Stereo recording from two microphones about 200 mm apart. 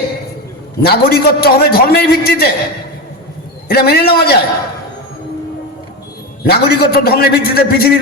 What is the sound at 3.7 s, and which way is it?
Speech, 50° left (ahead or behind).